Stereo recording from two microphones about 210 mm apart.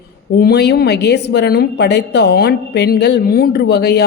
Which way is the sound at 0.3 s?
50° left (ahead or behind).